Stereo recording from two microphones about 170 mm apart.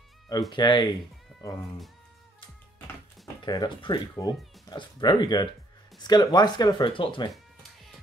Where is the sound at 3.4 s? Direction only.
25° left (ahead or behind).